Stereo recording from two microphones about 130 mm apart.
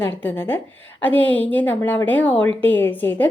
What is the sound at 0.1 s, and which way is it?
A woman's voice, 15° left (ahead or behind).